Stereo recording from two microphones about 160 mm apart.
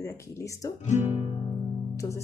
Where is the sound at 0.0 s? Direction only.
20° left (ahead or behind).